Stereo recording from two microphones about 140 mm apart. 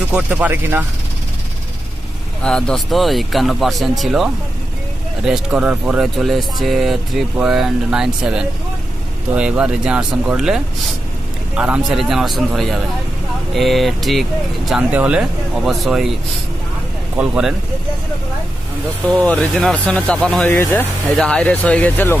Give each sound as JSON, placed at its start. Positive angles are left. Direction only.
{"t": 0.1, "sound": "speech", "side_deg": -10}
{"t": 2.4, "sound": "speech", "side_deg": 5}
{"t": 17.2, "sound": "speech", "side_deg": -5}
{"t": 19.0, "sound": "speech", "side_deg": 10}